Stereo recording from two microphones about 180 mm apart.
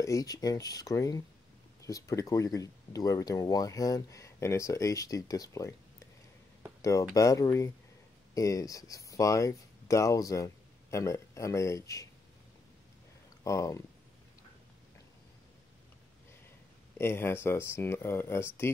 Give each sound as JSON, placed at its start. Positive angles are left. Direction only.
{"t": 0.0, "sound": "speech", "side_deg": 20}
{"t": 6.8, "sound": "speech", "side_deg": 20}
{"t": 13.4, "sound": "speech", "side_deg": 15}
{"t": 17.0, "sound": "speech", "side_deg": 10}